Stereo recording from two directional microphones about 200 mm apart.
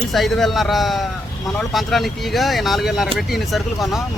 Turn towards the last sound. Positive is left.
turn(degrees=0)  # may be behind; listen again after turning